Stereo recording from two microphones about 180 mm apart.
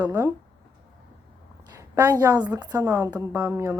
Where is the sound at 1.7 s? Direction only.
20° right (ahead or behind).